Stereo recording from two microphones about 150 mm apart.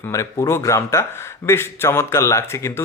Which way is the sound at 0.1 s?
20° left (ahead or behind).